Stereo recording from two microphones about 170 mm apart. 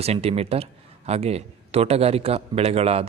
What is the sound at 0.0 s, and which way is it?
A man's voice, 35° right (ahead or behind).